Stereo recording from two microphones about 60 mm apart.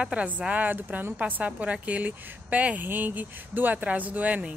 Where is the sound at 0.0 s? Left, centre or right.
Right.